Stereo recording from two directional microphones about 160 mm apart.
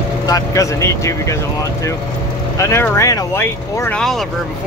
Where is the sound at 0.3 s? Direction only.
20° left (ahead or behind).